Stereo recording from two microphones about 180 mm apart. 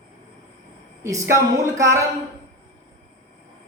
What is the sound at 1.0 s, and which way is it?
A man's voice, 15° right (ahead or behind).